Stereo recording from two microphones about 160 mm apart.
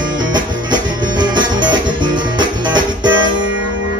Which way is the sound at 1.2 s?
30° right (ahead or behind).